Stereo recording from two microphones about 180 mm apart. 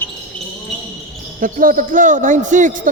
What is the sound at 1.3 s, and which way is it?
Speech, 50° right (ahead or behind).